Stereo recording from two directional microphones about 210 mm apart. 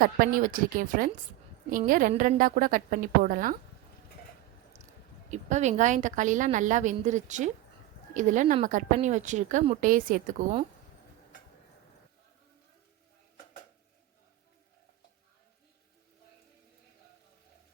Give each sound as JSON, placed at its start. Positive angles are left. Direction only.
{"t": 0.0, "sound": "a woman's voice", "side_deg": -40}
{"t": 4.7, "sound": "a sound", "side_deg": -35}
{"t": 5.3, "sound": "a woman's voice", "side_deg": -35}